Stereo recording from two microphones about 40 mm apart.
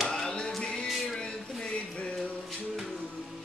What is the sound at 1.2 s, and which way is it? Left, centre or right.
Music, left.